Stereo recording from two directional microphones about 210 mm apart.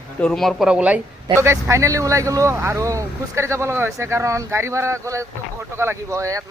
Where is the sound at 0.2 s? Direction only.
5° left (ahead or behind).